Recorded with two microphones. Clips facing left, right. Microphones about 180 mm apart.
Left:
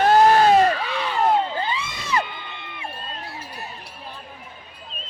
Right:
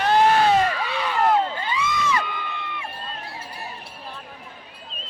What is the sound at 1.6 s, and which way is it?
Crowd, 30° left (ahead or behind).